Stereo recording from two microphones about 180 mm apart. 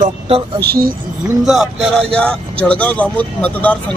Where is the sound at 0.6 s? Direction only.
60° right (ahead or behind).